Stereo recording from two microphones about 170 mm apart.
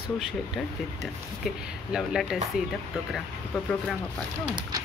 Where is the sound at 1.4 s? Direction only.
Centre (ahead or behind).